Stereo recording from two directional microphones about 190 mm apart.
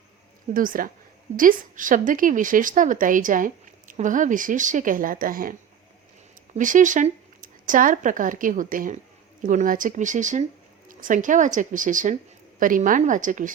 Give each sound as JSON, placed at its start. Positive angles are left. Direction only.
{"t": 0.5, "sound": "a woman's voice", "side_deg": -45}